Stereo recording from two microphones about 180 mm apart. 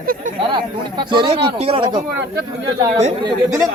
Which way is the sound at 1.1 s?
30° right (ahead or behind).